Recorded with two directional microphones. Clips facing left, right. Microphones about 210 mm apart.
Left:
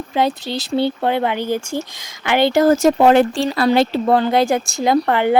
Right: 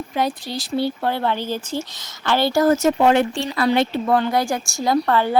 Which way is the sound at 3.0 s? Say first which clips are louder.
Left 4 dB; 40° left (ahead or behind).